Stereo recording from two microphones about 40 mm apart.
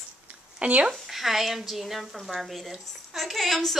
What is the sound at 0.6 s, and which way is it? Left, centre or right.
Speech, right.